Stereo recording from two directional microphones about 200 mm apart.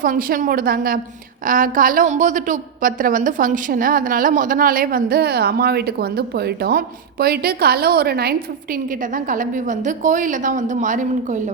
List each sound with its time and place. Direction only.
0.0 s a woman's voice: 45° right (ahead or behind)